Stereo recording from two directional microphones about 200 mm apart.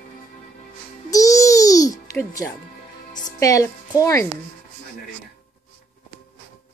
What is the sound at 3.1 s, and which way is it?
Music, 40° left (ahead or behind).